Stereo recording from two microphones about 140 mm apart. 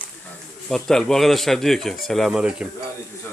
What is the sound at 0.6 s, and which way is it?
Speech, 5° left (ahead or behind).